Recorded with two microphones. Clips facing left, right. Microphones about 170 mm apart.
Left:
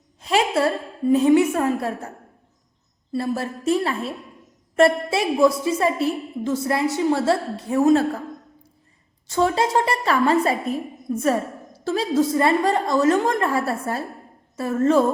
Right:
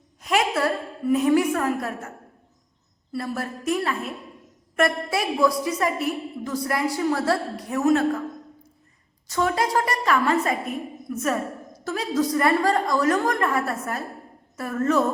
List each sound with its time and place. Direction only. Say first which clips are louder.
0.2 s a woman's voice: left 3 dB; 30° left (ahead or behind)
9.2 s a woman's voice: left 3 dB; 25° left (ahead or behind)